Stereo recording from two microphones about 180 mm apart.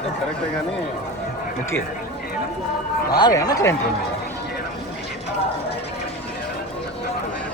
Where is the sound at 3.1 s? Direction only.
20° left (ahead or behind).